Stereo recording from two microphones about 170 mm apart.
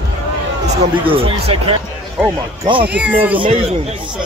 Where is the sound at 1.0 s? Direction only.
35° right (ahead or behind).